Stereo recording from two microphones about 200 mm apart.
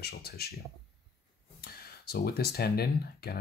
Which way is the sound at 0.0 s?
50° left (ahead or behind).